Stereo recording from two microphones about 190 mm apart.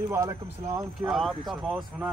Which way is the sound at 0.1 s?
15° right (ahead or behind).